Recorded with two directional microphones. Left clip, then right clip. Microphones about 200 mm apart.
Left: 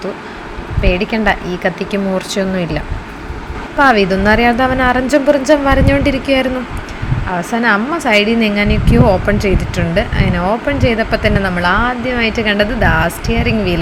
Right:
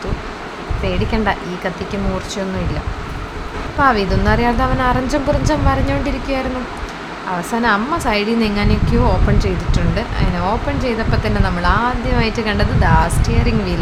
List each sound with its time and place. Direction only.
0.9 s speech: 15° left (ahead or behind)
3.8 s a woman's voice: 20° left (ahead or behind)
7.5 s speech: 20° left (ahead or behind)